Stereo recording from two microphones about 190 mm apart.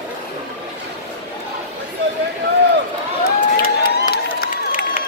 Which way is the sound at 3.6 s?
50° left (ahead or behind).